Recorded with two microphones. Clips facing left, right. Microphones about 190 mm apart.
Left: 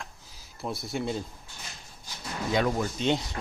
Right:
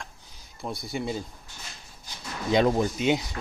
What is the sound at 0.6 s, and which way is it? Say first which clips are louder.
Speech: even; centre (ahead or behind).